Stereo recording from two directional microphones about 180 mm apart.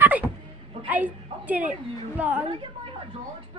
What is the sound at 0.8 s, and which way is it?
A woman's voice, 10° right (ahead or behind).